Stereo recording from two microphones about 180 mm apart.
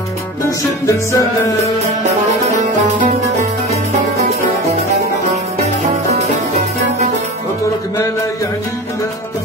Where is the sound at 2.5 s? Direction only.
40° right (ahead or behind).